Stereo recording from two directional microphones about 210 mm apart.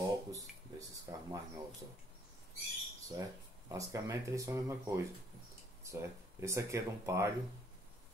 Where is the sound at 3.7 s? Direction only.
15° right (ahead or behind).